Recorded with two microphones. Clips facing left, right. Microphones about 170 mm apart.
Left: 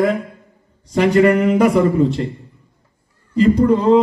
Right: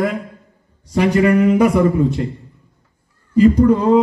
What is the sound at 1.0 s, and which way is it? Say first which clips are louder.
Speech: left 1 dB; 5° left (ahead or behind).